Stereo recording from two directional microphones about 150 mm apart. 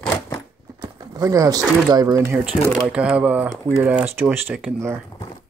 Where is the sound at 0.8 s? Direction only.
25° right (ahead or behind).